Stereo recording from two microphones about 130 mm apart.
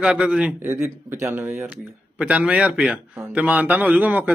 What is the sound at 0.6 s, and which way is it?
A man's voice, 20° right (ahead or behind).